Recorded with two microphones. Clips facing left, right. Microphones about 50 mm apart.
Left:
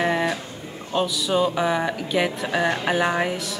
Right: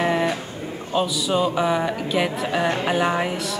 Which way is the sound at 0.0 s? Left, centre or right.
Centre.